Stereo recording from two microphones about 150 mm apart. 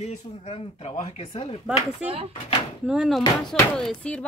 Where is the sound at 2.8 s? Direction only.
5° right (ahead or behind).